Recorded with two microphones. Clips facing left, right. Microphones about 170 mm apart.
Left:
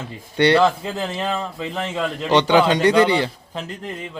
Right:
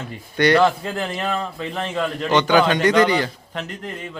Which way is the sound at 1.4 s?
5° left (ahead or behind).